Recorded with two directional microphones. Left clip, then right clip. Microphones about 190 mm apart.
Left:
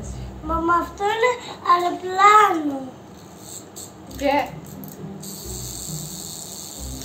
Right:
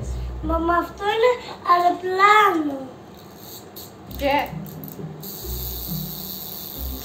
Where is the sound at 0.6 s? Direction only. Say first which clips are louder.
Left 2 dB; 25° left (ahead or behind).